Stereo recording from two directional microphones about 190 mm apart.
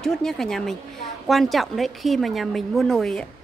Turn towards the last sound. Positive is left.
turn(degrees=0)  # may be behind; listen again after turning